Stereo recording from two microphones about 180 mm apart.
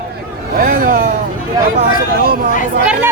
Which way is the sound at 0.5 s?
50° right (ahead or behind).